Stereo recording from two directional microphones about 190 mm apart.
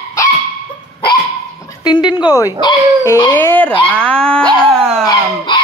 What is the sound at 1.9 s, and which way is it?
Speech, 20° left (ahead or behind).